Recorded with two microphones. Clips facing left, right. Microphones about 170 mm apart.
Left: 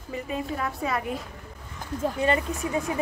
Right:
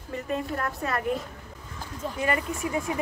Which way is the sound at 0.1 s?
5° left (ahead or behind).